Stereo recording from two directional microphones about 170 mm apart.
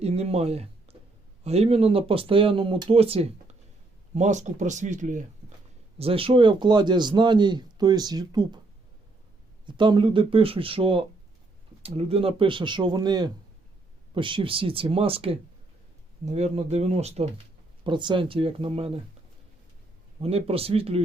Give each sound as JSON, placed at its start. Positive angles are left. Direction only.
{"t": 0.0, "sound": "speech", "side_deg": -35}
{"t": 6.0, "sound": "a man's voice", "side_deg": -35}
{"t": 9.6, "sound": "a man's voice", "side_deg": -25}
{"t": 17.8, "sound": "speech", "side_deg": -30}
{"t": 20.2, "sound": "speech", "side_deg": -35}